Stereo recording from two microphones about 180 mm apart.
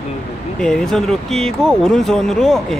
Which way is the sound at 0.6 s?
5° left (ahead or behind).